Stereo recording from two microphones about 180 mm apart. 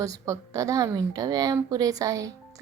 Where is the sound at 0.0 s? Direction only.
20° right (ahead or behind).